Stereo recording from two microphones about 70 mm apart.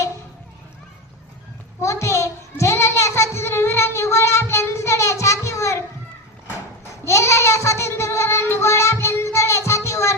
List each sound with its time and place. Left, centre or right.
1.8 s child singing: left
7.0 s child singing: left